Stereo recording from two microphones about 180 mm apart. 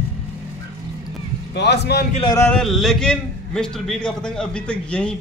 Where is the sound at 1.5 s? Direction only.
70° left (ahead or behind).